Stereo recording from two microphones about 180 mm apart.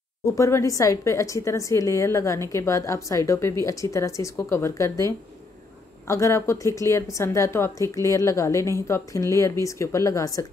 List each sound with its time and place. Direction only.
0.2 s a woman's voice: 15° left (ahead or behind)